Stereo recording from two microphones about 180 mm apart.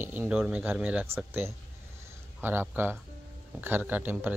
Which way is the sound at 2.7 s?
10° right (ahead or behind).